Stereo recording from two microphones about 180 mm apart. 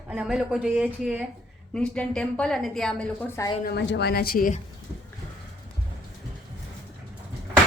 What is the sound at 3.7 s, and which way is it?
Speech, 70° left (ahead or behind).